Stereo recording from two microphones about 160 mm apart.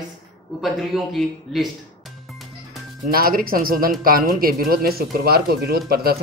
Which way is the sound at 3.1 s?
65° right (ahead or behind).